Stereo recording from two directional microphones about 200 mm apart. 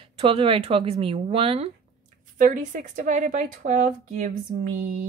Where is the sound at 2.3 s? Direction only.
40° right (ahead or behind).